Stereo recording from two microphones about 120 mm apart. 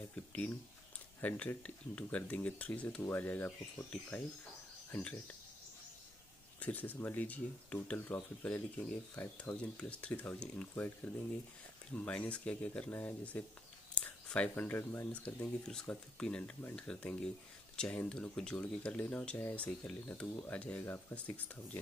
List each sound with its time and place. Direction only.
0.1 s a sound: 10° left (ahead or behind)
1.2 s speech: 10° left (ahead or behind)
6.6 s speech: 15° left (ahead or behind)